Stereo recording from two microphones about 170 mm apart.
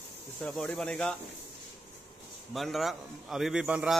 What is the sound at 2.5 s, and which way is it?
Speech, centre (ahead or behind).